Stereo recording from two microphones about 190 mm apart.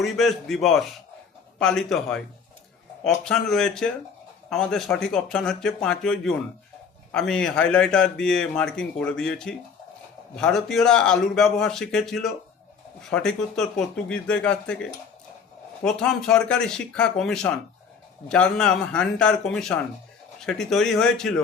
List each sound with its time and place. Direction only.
0.0 s a man's voice: centre (ahead or behind)
15.8 s a man's voice: 5° left (ahead or behind)